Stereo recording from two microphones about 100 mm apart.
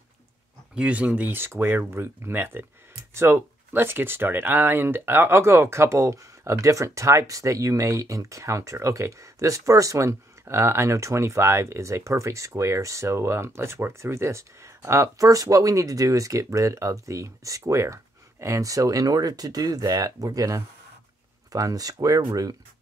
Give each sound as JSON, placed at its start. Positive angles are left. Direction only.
{"t": 0.7, "sound": "speech", "side_deg": -15}